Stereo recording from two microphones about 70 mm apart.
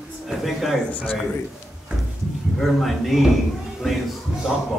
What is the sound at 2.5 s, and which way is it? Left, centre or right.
Speech, centre.